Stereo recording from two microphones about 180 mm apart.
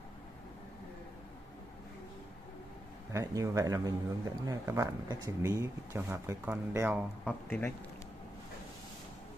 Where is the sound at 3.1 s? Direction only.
20° right (ahead or behind).